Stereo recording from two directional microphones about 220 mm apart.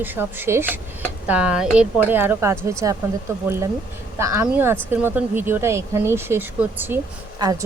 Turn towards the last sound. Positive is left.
turn(degrees=-15)  # may be behind; listen again after turning